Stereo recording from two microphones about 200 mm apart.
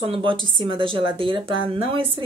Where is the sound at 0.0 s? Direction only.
25° right (ahead or behind).